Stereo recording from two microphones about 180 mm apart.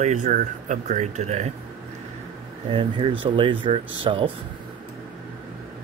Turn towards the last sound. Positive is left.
turn(degrees=-30)  # may be behind; listen again after turning